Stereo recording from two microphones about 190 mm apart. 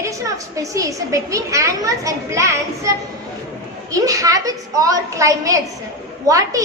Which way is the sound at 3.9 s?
15° right (ahead or behind).